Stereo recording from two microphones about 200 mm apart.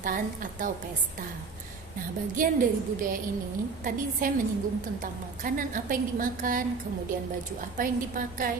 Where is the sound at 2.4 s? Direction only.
40° right (ahead or behind).